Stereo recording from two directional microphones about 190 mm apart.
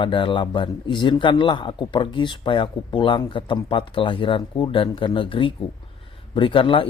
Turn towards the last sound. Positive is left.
turn(degrees=25)  # may be behind; listen again after turning